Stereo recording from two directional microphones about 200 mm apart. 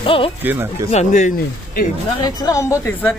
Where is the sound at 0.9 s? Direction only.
35° left (ahead or behind).